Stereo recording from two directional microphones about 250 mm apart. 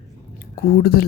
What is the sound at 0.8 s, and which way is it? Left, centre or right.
Speech, left.